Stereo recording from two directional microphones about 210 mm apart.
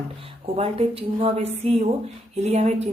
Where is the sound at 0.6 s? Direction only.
30° right (ahead or behind).